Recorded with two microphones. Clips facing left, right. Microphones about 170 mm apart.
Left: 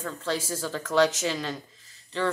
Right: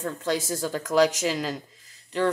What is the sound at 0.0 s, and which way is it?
Speech, 15° right (ahead or behind).